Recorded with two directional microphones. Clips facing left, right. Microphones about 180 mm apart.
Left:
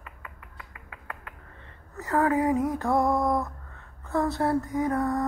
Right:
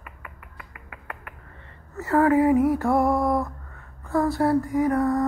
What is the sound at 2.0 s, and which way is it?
Speech, 15° left (ahead or behind).